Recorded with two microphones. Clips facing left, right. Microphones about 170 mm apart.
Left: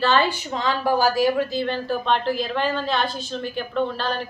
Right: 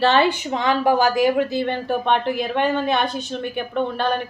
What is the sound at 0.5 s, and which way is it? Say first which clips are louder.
Speech: right 4 dB; 60° right (ahead or behind).